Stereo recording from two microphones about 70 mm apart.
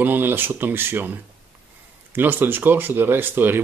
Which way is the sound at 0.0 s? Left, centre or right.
Right.